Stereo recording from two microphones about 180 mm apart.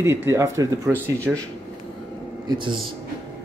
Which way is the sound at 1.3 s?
5° right (ahead or behind).